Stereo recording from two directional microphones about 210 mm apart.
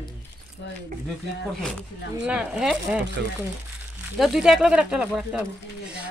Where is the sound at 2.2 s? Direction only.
5° right (ahead or behind).